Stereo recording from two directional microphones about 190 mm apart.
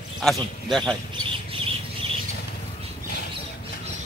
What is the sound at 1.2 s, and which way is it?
Bird, 30° right (ahead or behind).